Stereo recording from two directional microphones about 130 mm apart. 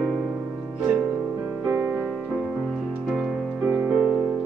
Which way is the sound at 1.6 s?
25° right (ahead or behind).